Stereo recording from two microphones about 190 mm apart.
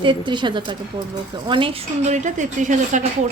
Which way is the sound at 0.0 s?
25° right (ahead or behind).